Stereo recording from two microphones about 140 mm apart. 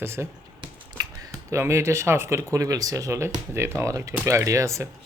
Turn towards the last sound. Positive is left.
turn(degrees=-20)  # may be behind; listen again after turning